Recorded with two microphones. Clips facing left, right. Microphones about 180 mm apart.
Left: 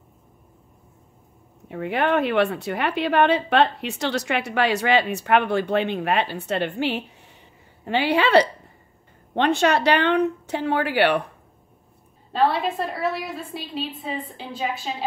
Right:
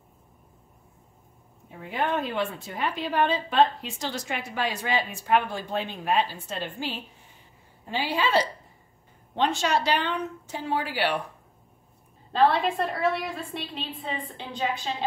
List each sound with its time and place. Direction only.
1.7 s a woman's voice: 70° left (ahead or behind)
12.3 s a woman's voice: centre (ahead or behind)